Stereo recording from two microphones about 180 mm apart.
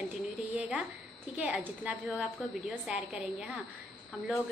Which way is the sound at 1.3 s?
5° right (ahead or behind).